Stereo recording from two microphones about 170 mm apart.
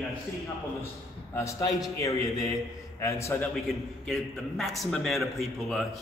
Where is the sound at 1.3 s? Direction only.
15° left (ahead or behind).